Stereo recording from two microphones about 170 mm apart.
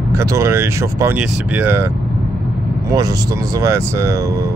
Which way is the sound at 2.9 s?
20° right (ahead or behind).